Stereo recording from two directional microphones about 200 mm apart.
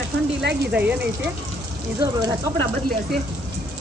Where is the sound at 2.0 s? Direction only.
20° right (ahead or behind).